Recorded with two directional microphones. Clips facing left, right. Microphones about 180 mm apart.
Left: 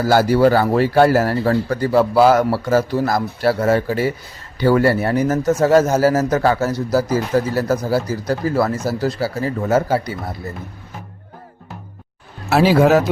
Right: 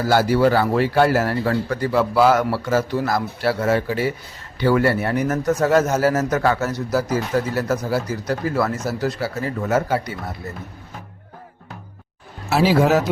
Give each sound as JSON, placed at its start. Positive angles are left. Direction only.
{"t": 0.0, "sound": "speech", "side_deg": 40}
{"t": 12.5, "sound": "speech", "side_deg": 60}